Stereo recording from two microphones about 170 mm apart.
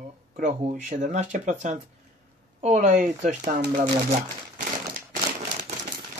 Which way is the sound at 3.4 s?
60° right (ahead or behind).